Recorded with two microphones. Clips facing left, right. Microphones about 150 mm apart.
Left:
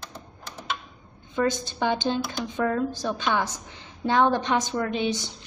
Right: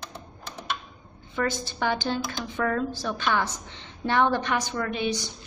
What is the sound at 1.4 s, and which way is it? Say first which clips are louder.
A woman's voice: left 3 dB; 20° left (ahead or behind).